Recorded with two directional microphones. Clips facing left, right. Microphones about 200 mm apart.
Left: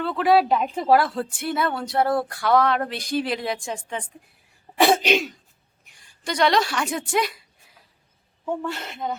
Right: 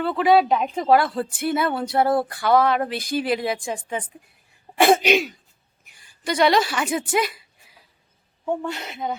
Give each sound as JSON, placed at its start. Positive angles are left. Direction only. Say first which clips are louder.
{"t": 0.0, "sound": "a woman's voice", "louder": "right 1 dB", "side_deg": 0}
{"t": 4.9, "sound": "throat clearing", "louder": "right 5 dB", "side_deg": -10}
{"t": 5.8, "sound": "a sound", "louder": "right 3 dB", "side_deg": -5}
{"t": 8.6, "sound": "a woman's voice", "louder": "right 1 dB", "side_deg": 0}